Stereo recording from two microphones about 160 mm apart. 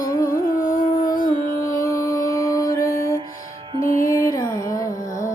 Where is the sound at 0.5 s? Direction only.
60° left (ahead or behind).